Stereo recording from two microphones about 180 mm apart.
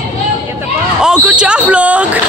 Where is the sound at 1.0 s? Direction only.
5° right (ahead or behind).